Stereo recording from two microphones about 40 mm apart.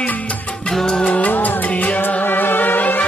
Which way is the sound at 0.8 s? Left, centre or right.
Left.